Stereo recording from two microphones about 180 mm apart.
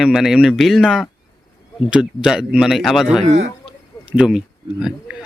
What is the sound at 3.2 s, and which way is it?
Speech, 40° right (ahead or behind).